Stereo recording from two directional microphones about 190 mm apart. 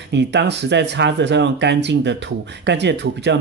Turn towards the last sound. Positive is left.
turn(degrees=-65)  # may be behind; listen again after turning